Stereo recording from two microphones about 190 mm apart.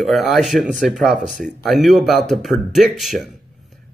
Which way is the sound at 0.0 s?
Centre (ahead or behind).